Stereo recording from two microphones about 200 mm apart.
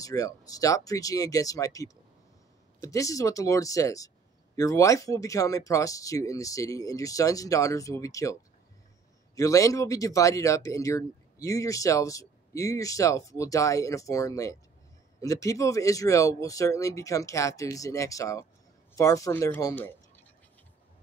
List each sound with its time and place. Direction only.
0.0 s speech: 15° left (ahead or behind)